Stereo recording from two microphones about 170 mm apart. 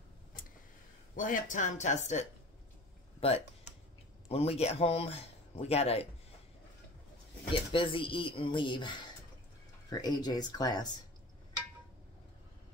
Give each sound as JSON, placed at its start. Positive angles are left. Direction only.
{"t": 1.1, "sound": "speech", "side_deg": 50}
{"t": 7.5, "sound": "speech", "side_deg": 30}